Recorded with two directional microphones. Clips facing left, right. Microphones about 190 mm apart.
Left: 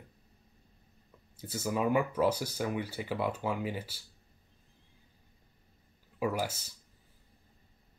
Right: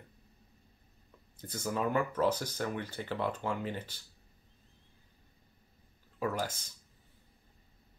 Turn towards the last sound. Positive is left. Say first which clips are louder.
# left 2 dB
turn(degrees=5)  # may be behind; listen again after turning